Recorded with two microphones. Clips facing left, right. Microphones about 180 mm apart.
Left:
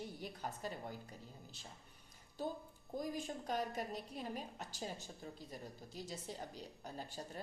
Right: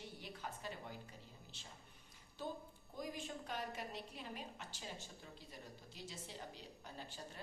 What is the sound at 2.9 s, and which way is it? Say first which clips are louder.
Speech: left 5 dB; 40° left (ahead or behind).